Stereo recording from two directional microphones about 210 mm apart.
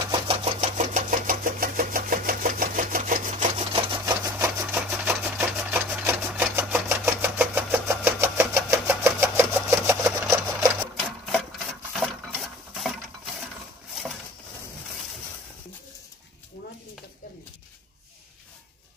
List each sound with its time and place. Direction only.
0.0 s engine: 25° right (ahead or behind)
4.0 s a sound: 15° right (ahead or behind)
4.9 s sewing machine: 10° right (ahead or behind)
9.7 s engine: 5° right (ahead or behind)
10.3 s sewing machine: 15° right (ahead or behind)
11.9 s a sound: centre (ahead or behind)